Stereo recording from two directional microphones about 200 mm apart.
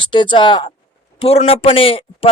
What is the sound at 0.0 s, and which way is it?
A man's voice, 25° left (ahead or behind).